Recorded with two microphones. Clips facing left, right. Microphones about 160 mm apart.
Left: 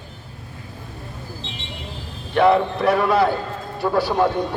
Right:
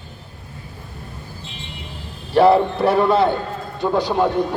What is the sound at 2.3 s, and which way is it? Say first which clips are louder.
A man's voice: right 3 dB; 30° right (ahead or behind).